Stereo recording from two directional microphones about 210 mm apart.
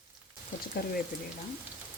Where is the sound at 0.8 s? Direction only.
50° left (ahead or behind).